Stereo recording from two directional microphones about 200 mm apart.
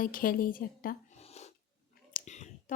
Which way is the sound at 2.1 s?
35° left (ahead or behind).